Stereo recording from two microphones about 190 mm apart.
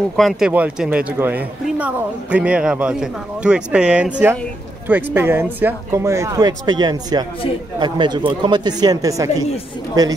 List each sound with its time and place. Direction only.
0.1 s speech: centre (ahead or behind); by 10.1 s 20° right (ahead or behind)